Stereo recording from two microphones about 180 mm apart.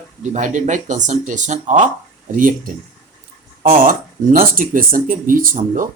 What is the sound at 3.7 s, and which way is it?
Speech, 50° right (ahead or behind).